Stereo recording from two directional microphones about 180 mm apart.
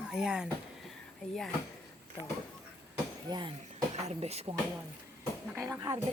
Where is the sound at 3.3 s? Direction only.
25° right (ahead or behind).